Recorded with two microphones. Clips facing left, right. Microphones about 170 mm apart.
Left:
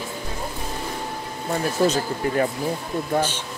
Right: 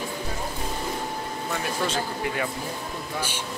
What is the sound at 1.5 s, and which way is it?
Speech, 40° left (ahead or behind).